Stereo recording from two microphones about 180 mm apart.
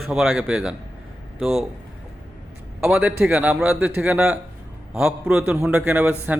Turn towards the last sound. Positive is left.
turn(degrees=-10)  # may be behind; listen again after turning